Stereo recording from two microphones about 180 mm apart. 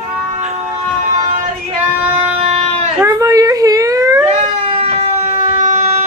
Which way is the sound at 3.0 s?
15° right (ahead or behind).